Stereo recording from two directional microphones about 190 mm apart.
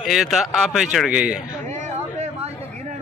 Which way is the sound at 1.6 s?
40° right (ahead or behind).